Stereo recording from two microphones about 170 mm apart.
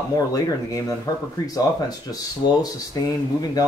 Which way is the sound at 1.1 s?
20° left (ahead or behind).